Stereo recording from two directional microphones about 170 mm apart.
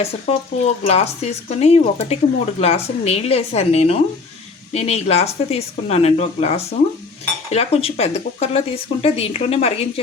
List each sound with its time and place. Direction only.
0.0 s a woman's voice: 40° left (ahead or behind)